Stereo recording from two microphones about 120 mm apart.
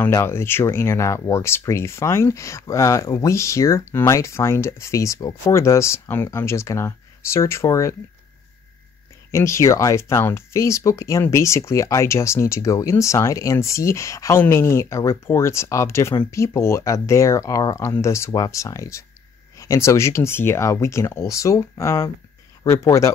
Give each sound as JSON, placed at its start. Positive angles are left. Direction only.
{"t": 0.0, "sound": "speech", "side_deg": 20}
{"t": 9.3, "sound": "speech", "side_deg": 25}